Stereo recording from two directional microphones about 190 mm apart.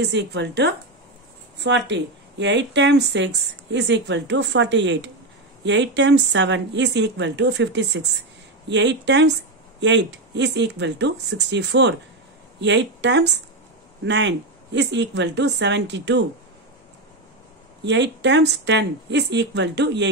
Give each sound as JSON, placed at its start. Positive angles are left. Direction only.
{"t": 0.0, "sound": "speech", "side_deg": -65}
{"t": 17.8, "sound": "speech", "side_deg": -70}